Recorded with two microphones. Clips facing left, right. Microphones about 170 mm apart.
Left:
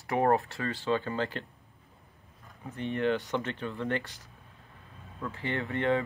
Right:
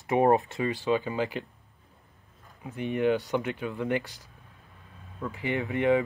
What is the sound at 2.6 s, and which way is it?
Speech, 15° right (ahead or behind).